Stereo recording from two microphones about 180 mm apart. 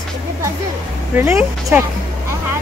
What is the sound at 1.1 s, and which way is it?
Speech, 10° right (ahead or behind).